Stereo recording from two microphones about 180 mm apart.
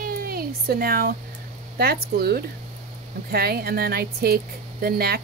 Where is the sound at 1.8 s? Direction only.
60° right (ahead or behind).